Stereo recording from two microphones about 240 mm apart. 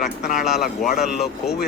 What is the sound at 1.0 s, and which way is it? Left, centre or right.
Speech, centre.